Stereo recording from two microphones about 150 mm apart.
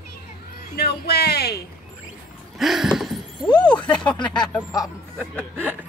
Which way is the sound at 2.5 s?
Centre (ahead or behind).